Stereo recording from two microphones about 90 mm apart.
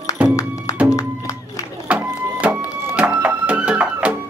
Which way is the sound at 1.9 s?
15° right (ahead or behind).